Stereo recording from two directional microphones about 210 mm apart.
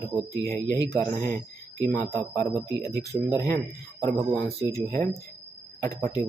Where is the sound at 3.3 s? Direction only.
15° left (ahead or behind).